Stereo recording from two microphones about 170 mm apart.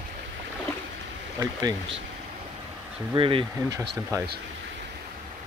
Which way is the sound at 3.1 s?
30° right (ahead or behind).